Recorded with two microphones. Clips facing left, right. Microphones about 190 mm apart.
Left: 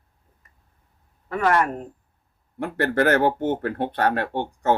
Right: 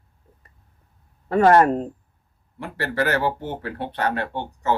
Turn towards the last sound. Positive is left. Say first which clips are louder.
# left 2 dB
turn(degrees=50)  # may be behind; listen again after turning